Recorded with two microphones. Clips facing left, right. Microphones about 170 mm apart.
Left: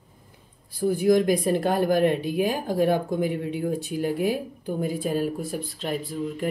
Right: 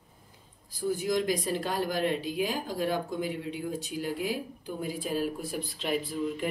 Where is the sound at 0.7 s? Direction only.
55° left (ahead or behind).